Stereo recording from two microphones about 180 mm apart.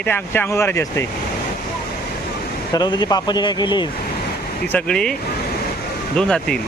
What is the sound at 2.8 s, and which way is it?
Speech, 25° left (ahead or behind).